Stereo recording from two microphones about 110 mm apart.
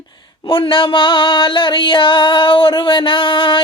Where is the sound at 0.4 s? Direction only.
50° left (ahead or behind).